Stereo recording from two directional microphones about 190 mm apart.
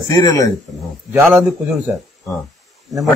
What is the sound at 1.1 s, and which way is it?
Speech, 10° right (ahead or behind).